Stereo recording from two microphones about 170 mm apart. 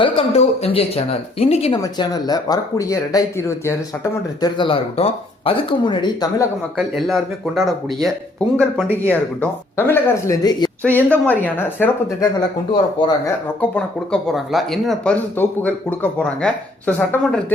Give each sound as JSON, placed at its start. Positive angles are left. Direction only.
{"t": 0.0, "sound": "speech", "side_deg": 35}
{"t": 1.8, "sound": "speech", "side_deg": 25}
{"t": 6.7, "sound": "speech", "side_deg": 0}
{"t": 9.0, "sound": "speech", "side_deg": 10}
{"t": 10.8, "sound": "speech", "side_deg": 10}
{"t": 13.0, "sound": "speech", "side_deg": 25}
{"t": 13.6, "sound": "speech", "side_deg": 5}